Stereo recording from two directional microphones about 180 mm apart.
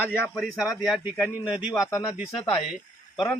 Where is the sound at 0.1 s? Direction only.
5° right (ahead or behind).